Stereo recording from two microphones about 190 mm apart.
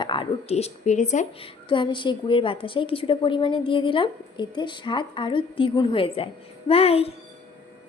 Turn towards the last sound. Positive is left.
turn(degrees=30)  # may be behind; listen again after turning